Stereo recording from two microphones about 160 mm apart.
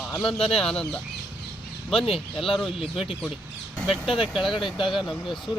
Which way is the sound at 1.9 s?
35° left (ahead or behind).